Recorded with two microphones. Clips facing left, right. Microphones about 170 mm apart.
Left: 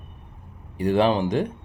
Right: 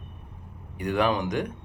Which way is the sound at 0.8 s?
30° left (ahead or behind).